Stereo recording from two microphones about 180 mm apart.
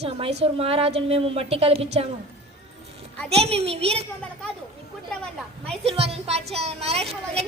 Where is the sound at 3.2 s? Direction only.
35° right (ahead or behind).